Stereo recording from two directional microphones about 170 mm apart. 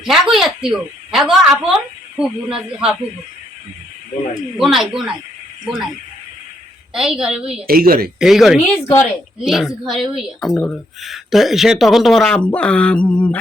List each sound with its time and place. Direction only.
0.0 s a woman's voice: centre (ahead or behind)
4.5 s a woman's voice: centre (ahead or behind)
6.9 s a woman's voice: 5° right (ahead or behind)
7.7 s speech: 60° right (ahead or behind)
8.2 s a woman's voice: centre (ahead or behind)
8.6 s a woman's voice: 15° left (ahead or behind)
9.4 s a woman's voice: centre (ahead or behind)